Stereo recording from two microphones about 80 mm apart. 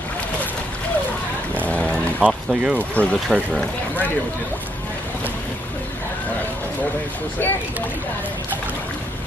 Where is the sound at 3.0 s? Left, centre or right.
Centre.